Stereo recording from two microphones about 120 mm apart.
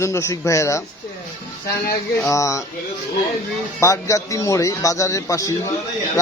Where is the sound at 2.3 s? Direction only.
25° left (ahead or behind).